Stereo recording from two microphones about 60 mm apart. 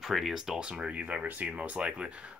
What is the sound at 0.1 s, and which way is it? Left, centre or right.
Speech, centre.